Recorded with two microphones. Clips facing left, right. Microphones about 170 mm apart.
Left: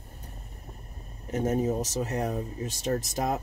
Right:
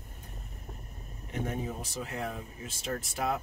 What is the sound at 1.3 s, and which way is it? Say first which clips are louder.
Speech: left 9 dB; 40° left (ahead or behind).